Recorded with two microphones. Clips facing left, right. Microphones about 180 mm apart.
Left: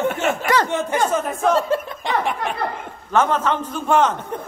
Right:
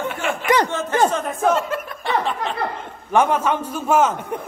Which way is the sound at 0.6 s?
15° left (ahead or behind).